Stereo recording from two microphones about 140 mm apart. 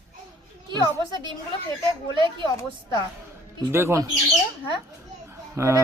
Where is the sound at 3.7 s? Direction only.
15° right (ahead or behind).